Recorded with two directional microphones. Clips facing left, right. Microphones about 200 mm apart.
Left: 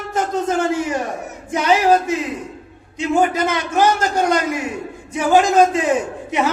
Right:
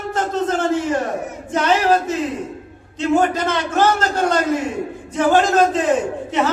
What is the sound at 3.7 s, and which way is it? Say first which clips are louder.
Speech: left 1 dB; 10° left (ahead or behind).